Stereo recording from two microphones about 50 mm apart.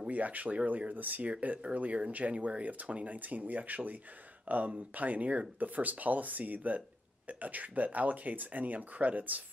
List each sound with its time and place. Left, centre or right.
0.0 s speech: right